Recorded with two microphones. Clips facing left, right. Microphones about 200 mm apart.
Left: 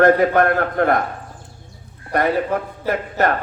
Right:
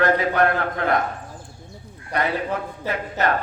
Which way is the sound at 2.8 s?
50° left (ahead or behind).